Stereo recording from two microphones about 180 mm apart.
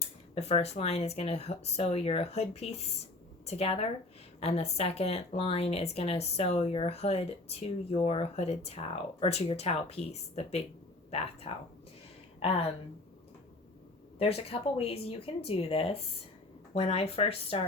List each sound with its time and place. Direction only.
0.0 s speech: 35° left (ahead or behind)
14.2 s speech: 35° left (ahead or behind)